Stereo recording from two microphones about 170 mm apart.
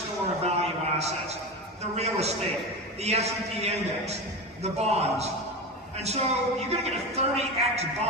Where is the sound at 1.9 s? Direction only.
40° right (ahead or behind).